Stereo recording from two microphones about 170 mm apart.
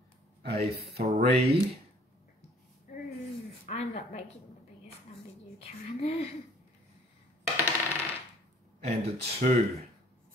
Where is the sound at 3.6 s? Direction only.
40° left (ahead or behind).